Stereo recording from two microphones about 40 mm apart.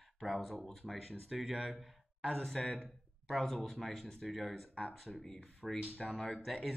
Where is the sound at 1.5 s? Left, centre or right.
Centre.